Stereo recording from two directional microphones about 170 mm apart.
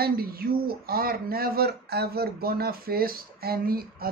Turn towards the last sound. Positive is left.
turn(degrees=-60)  # may be behind; listen again after turning